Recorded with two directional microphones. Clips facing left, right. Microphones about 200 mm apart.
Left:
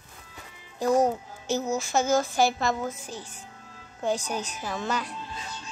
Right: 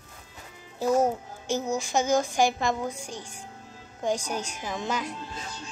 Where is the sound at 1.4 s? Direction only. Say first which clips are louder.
Left 1 dB; 10° right (ahead or behind).